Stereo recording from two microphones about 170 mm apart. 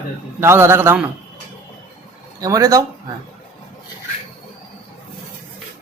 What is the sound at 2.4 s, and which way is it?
Speech, 20° right (ahead or behind).